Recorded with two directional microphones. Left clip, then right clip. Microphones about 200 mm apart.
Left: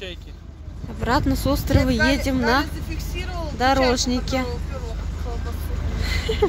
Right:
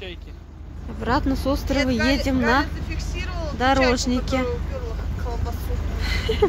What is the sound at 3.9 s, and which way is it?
Speech, 5° left (ahead or behind).